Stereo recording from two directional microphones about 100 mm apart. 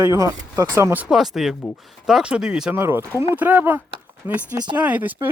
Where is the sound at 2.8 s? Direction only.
20° right (ahead or behind).